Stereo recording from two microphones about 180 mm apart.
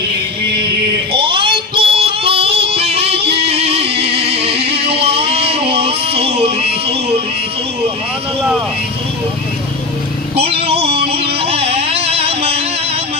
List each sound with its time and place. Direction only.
1.1 s music: 30° right (ahead or behind)
3.2 s music: 65° right (ahead or behind)
3.5 s music: 35° right (ahead or behind)
4.8 s a sound: 30° right (ahead or behind)
10.3 s music: 35° right (ahead or behind)